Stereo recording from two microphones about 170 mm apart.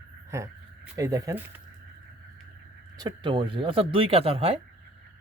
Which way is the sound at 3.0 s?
25° right (ahead or behind).